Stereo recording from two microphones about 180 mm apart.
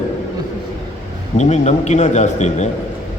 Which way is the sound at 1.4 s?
40° left (ahead or behind).